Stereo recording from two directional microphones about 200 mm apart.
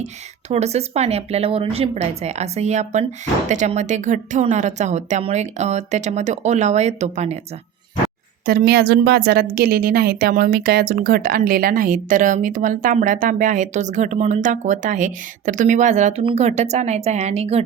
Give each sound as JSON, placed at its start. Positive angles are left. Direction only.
{"t": 0.0, "sound": "a woman's voice", "side_deg": -35}
{"t": 8.4, "sound": "a woman's voice", "side_deg": -50}